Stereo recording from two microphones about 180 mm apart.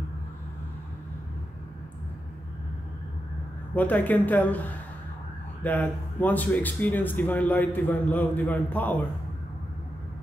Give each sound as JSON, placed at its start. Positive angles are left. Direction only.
{"t": 3.7, "sound": "speech", "side_deg": 10}